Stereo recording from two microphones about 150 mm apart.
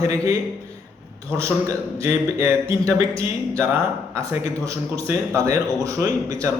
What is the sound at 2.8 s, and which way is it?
A man's voice, 20° right (ahead or behind).